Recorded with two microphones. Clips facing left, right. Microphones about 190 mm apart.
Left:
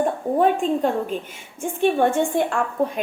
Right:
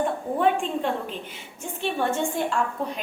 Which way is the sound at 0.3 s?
40° left (ahead or behind).